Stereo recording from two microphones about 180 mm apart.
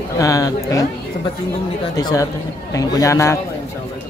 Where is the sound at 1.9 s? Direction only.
20° left (ahead or behind).